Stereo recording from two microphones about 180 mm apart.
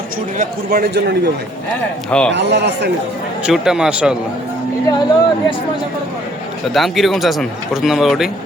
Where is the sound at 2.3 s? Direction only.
70° right (ahead or behind).